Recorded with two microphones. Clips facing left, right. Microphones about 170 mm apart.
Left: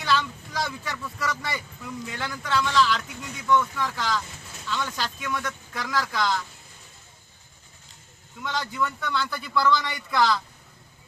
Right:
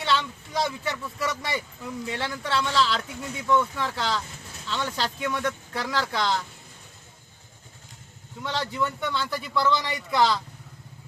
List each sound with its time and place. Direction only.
0.0 s speech: 25° right (ahead or behind)
8.4 s speech: 25° right (ahead or behind)